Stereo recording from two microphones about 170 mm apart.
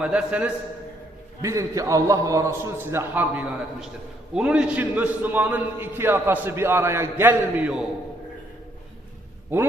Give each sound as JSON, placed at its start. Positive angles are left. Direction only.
{"t": 0.0, "sound": "a man's voice", "side_deg": -5}
{"t": 1.4, "sound": "a man's voice", "side_deg": -20}